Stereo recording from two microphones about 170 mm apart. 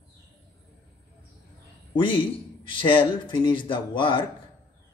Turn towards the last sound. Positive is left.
turn(degrees=30)  # may be behind; listen again after turning